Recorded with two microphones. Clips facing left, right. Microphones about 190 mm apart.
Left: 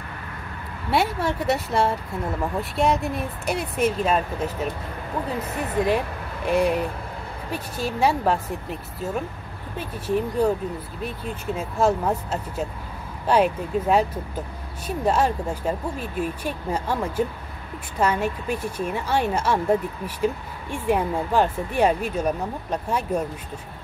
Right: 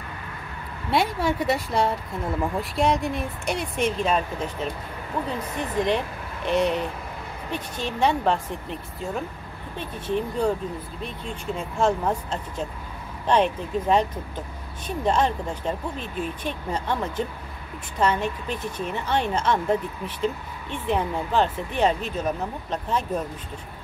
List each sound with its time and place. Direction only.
0.8 s speech: centre (ahead or behind)